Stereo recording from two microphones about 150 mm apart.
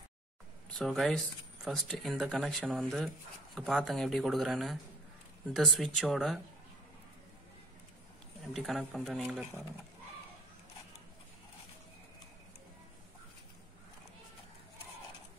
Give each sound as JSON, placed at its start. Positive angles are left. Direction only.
{"t": 0.7, "sound": "speech", "side_deg": 0}
{"t": 8.5, "sound": "speech", "side_deg": 0}